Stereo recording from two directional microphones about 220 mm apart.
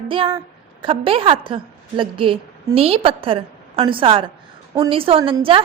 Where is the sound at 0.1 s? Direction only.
25° right (ahead or behind).